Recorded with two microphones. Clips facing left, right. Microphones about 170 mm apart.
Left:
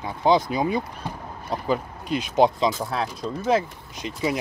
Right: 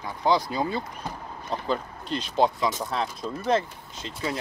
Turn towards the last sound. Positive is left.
turn(degrees=15)  # may be behind; listen again after turning